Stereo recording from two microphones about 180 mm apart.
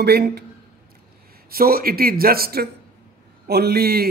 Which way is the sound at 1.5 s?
55° right (ahead or behind).